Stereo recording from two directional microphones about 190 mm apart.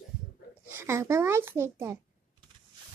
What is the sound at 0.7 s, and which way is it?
A child's voice, 15° right (ahead or behind).